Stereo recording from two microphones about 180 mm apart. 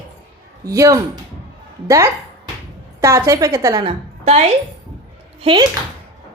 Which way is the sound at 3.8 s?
35° right (ahead or behind).